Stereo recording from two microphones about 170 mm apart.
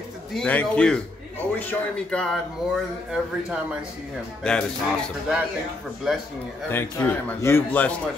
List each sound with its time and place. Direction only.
0.3 s speech: 5° left (ahead or behind)
6.7 s a man's voice: 15° left (ahead or behind)